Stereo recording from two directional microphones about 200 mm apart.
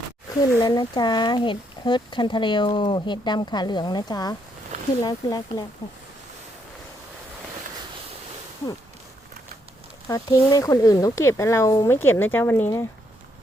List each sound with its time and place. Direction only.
0.6 s speech: 20° left (ahead or behind)
10.1 s speech: 20° left (ahead or behind)